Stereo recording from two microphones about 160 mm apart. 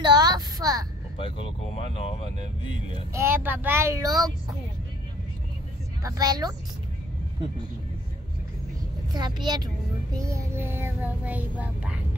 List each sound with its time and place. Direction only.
0.0 s a sound: 25° right (ahead or behind)
1.8 s speech: 35° left (ahead or behind)
3.1 s child singing: 15° right (ahead or behind)
6.0 s speech: 25° right (ahead or behind)
9.1 s speech: 25° right (ahead or behind)
10.1 s child singing: 20° right (ahead or behind)